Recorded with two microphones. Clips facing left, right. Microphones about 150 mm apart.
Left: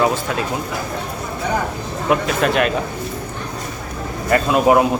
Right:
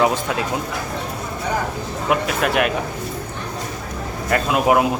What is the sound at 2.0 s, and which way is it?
Speech, 10° right (ahead or behind).